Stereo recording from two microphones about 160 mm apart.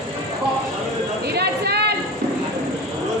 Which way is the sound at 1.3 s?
90° right.